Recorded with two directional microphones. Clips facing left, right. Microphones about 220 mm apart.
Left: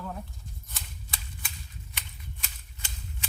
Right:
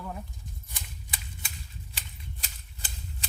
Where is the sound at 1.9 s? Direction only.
35° right (ahead or behind).